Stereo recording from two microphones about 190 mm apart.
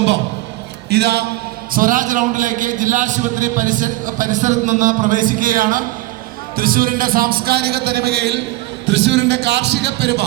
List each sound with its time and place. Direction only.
0.9 s a man's voice: 60° right (ahead or behind)
1.7 s a man's voice: 45° right (ahead or behind); by 10.2 s 60° right (ahead or behind)